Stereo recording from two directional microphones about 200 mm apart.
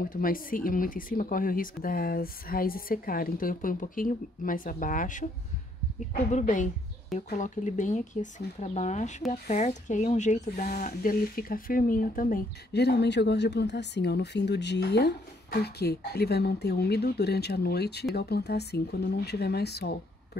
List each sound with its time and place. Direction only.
0.0 s speech: 45° left (ahead or behind)
6.3 s speech: 40° left (ahead or behind); by 20.0 s 55° left (ahead or behind)